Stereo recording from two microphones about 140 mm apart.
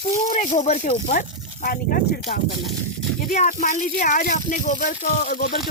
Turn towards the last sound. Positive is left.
turn(degrees=75)  # may be behind; listen again after turning